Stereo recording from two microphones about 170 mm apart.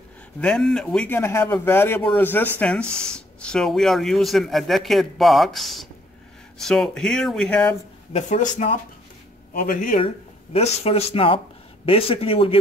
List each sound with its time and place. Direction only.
0.4 s speech: 5° left (ahead or behind)
8.1 s speech: 45° left (ahead or behind)
9.9 s speech: 35° left (ahead or behind)